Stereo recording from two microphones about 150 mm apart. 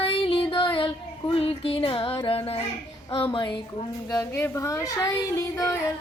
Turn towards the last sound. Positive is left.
turn(degrees=20)  # may be behind; listen again after turning